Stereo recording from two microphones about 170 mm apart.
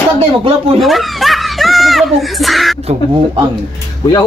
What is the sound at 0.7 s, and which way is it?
Snicker, centre (ahead or behind).